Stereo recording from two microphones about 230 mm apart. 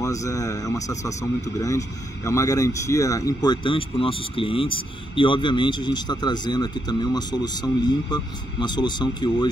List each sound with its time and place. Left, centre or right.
0.0 s a man's voice: centre